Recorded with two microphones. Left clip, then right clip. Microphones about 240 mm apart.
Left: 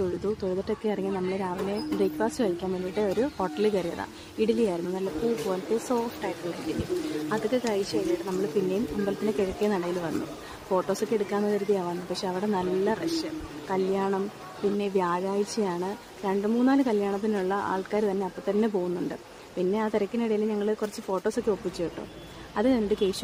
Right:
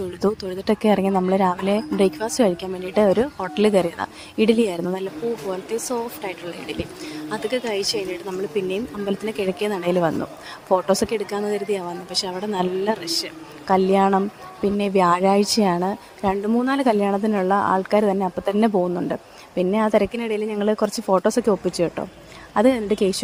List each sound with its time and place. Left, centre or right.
0.2 s speech: right